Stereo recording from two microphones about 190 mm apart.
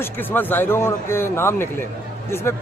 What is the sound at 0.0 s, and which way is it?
Speech, 10° left (ahead or behind).